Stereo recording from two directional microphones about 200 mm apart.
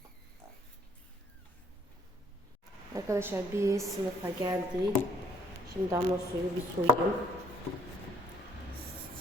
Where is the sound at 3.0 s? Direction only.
15° right (ahead or behind).